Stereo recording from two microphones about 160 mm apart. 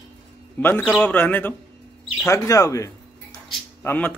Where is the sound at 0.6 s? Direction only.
10° left (ahead or behind).